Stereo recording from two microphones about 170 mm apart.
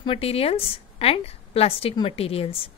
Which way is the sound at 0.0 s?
35° left (ahead or behind).